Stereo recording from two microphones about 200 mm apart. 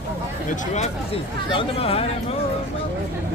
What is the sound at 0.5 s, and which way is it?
Speech, 30° left (ahead or behind).